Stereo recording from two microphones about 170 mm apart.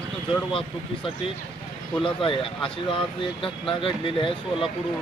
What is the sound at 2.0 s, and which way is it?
Speech, 30° left (ahead or behind).